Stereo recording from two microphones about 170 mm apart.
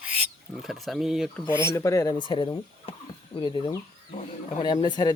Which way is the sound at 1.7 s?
20° left (ahead or behind).